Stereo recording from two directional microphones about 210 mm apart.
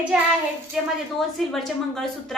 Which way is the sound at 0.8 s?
5° right (ahead or behind).